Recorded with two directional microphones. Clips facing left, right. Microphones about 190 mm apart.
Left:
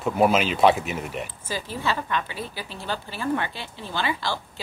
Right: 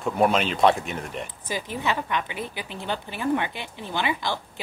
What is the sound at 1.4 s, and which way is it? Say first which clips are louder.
A woman's voice: right 1 dB; 15° right (ahead or behind).